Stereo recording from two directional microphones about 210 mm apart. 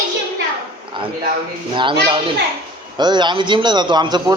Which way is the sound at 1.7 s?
25° right (ahead or behind).